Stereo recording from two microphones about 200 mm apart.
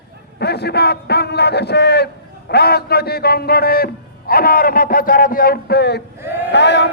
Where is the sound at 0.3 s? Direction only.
55° left (ahead or behind).